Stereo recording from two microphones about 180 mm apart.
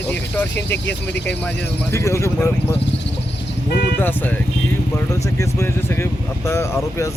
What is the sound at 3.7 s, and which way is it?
Speech, 65° left (ahead or behind).